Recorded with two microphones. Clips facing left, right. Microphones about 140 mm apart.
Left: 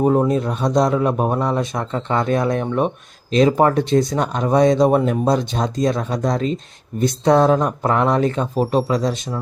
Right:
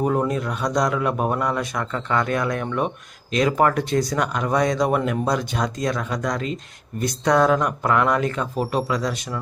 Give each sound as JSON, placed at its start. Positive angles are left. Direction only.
{"t": 0.2, "sound": "a man's voice", "side_deg": 25}